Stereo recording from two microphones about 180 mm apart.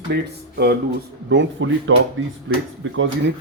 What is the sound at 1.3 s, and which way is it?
Speech, 90° right.